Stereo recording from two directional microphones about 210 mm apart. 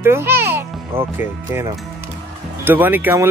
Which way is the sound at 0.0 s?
10° right (ahead or behind).